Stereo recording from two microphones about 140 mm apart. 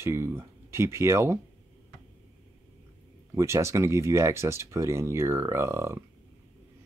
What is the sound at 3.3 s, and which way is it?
Speech, 20° right (ahead or behind).